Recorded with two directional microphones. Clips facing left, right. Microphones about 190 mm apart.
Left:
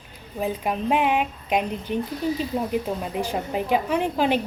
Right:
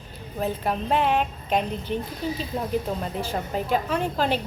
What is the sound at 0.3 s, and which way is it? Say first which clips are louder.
A woman's voice: left 1 dB; 10° left (ahead or behind).